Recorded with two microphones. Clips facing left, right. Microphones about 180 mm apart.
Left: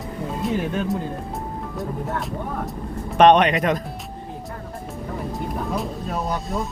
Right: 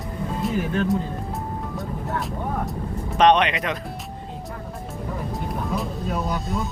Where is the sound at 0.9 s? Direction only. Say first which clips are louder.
Right 1 dB; centre (ahead or behind).